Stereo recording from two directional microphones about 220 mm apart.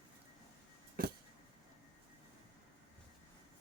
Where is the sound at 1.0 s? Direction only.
40° right (ahead or behind).